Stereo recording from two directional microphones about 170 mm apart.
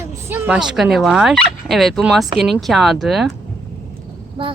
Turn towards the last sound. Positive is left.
turn(degrees=-35)  # may be behind; listen again after turning